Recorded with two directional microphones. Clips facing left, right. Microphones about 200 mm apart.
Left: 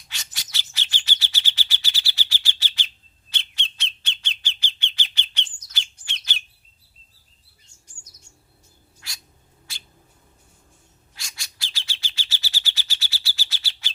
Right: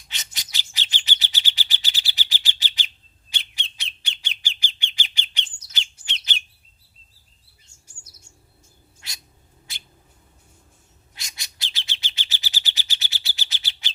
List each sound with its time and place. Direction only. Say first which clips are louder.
0.1 s bird: right 1 dB; 20° right (ahead or behind)
7.9 s chirp: right 1 dB; 10° right (ahead or behind)
9.0 s cat: even; 20° right (ahead or behind)
11.1 s bird: even; 20° right (ahead or behind)